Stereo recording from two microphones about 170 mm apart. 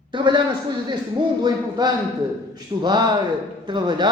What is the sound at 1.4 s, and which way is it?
Speech, 25° right (ahead or behind).